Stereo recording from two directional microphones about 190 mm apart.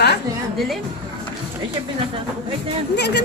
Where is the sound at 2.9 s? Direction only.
60° left (ahead or behind).